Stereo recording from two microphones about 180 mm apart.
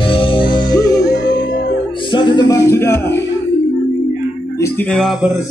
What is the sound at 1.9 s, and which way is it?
Music, 25° left (ahead or behind).